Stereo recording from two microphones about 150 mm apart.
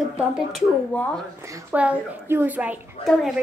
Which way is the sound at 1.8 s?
10° right (ahead or behind).